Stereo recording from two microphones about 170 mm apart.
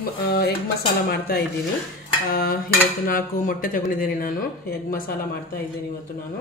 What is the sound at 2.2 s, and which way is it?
Speech, 60° left (ahead or behind).